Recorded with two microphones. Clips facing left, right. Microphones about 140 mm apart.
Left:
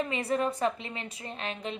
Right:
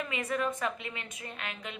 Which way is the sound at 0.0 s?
35° left (ahead or behind).